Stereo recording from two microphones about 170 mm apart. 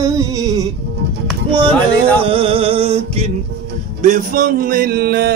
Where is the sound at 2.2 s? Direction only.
35° right (ahead or behind).